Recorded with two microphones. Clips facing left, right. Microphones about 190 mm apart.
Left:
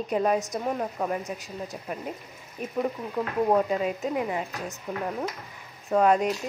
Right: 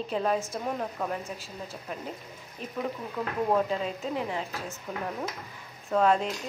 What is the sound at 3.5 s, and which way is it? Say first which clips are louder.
Speech: left 2 dB; 5° left (ahead or behind).